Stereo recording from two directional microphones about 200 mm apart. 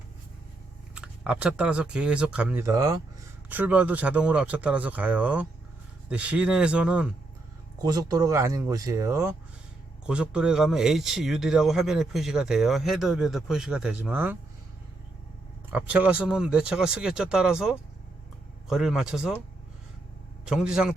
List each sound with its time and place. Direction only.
0.9 s speech: 5° right (ahead or behind)
7.8 s speech: 20° right (ahead or behind)
10.1 s speech: 5° right (ahead or behind)
15.7 s speech: 5° right (ahead or behind)
20.4 s speech: 5° right (ahead or behind)